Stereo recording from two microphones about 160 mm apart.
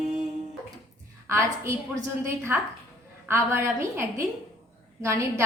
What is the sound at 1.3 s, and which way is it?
A woman's voice, 15° right (ahead or behind).